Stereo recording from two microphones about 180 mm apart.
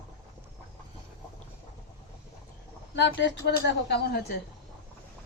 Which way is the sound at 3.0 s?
75° left (ahead or behind).